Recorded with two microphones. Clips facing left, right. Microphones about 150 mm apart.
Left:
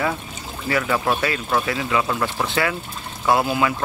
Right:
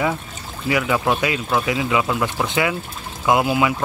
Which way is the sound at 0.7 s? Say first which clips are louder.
Right 2 dB; 10° right (ahead or behind).